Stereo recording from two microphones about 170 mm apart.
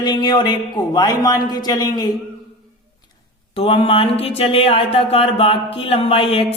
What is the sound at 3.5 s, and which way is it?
Music, 35° left (ahead or behind).